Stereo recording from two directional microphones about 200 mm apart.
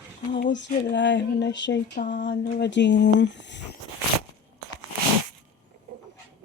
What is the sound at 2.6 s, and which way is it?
Speech, 60° left (ahead or behind).